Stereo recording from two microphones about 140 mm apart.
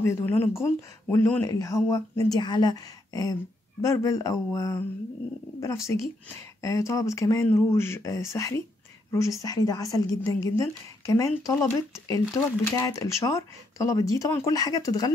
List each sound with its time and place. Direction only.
0.0 s a woman's voice: 20° left (ahead or behind)